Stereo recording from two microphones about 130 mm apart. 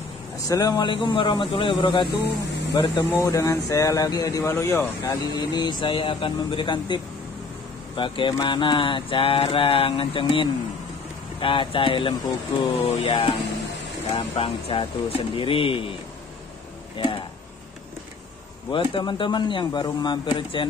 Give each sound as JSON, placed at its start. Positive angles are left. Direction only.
{"t": 0.5, "sound": "speech", "side_deg": 30}
{"t": 14.1, "sound": "speech", "side_deg": 45}
{"t": 18.7, "sound": "speech", "side_deg": 40}